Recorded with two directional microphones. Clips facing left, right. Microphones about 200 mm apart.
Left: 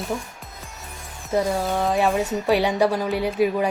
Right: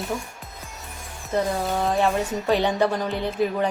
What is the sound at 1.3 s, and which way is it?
Speech, centre (ahead or behind).